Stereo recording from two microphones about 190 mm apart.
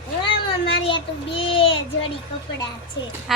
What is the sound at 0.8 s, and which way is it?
Child singing, 25° left (ahead or behind).